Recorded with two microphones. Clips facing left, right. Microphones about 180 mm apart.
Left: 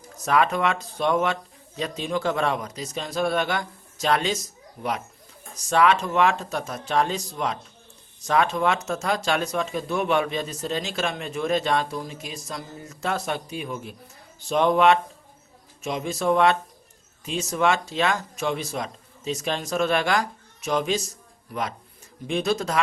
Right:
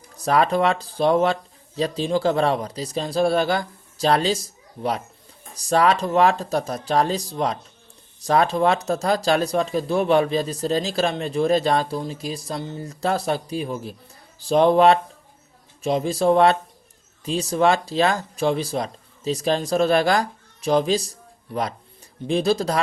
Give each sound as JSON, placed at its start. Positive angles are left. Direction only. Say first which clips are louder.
{"t": 0.2, "sound": "speech", "louder": "right 3 dB", "side_deg": -35}